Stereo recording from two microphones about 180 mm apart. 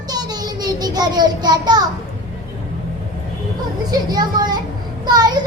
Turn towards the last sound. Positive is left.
turn(degrees=-25)  # may be behind; listen again after turning